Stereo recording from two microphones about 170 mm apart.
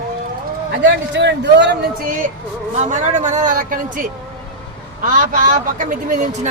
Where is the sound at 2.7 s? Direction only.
45° right (ahead or behind).